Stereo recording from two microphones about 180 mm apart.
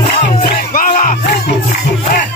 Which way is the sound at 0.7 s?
50° left (ahead or behind).